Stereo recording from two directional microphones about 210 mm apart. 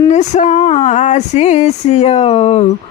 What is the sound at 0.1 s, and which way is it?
Speech, 35° left (ahead or behind).